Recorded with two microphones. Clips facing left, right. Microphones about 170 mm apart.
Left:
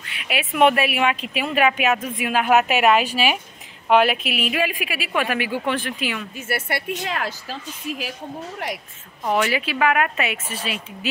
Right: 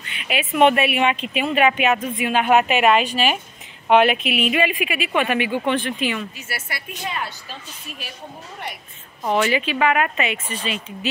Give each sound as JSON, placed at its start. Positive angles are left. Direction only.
{"t": 0.0, "sound": "speech", "side_deg": 5}
{"t": 6.3, "sound": "a woman's voice", "side_deg": 60}
{"t": 8.6, "sound": "a woman's voice", "side_deg": 90}
{"t": 9.2, "sound": "speech", "side_deg": 0}